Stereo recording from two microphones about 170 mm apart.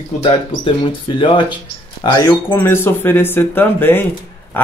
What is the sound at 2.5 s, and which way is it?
Speech, 15° left (ahead or behind).